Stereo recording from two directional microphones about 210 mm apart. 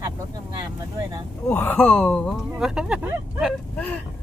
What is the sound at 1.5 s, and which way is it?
Speech, 10° left (ahead or behind).